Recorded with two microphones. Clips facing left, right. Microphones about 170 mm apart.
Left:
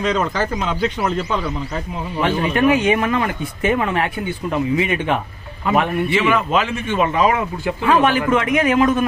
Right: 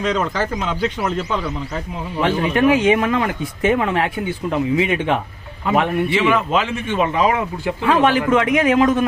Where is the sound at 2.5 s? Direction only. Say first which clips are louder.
Right 1 dB; 90° right.